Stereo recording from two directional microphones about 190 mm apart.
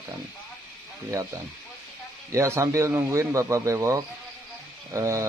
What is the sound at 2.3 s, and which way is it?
Speech, 15° right (ahead or behind).